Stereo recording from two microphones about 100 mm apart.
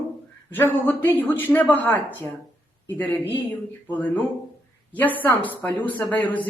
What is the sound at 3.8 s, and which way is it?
Speech, 15° left (ahead or behind).